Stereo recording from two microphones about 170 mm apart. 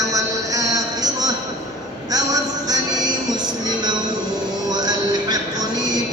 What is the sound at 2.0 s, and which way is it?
Music, 20° right (ahead or behind).